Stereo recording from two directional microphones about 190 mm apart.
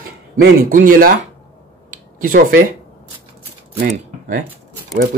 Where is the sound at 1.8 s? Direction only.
45° right (ahead or behind).